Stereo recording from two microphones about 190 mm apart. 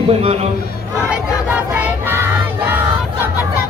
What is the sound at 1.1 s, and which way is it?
Choir, 10° right (ahead or behind).